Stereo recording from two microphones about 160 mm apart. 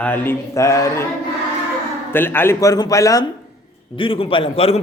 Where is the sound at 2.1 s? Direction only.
15° left (ahead or behind).